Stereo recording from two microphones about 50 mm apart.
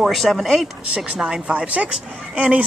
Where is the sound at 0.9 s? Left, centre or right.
Centre.